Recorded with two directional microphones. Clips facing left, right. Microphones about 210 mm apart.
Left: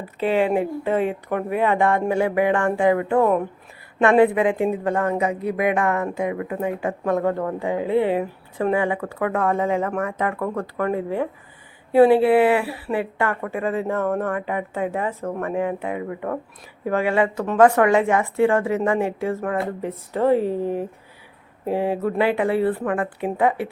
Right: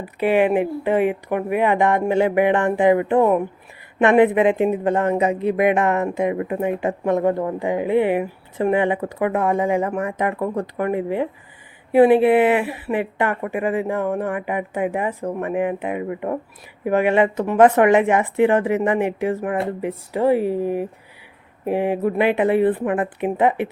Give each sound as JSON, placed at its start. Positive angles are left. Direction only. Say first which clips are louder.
{"t": 0.0, "sound": "a woman's voice", "louder": "right 3 dB", "side_deg": -15}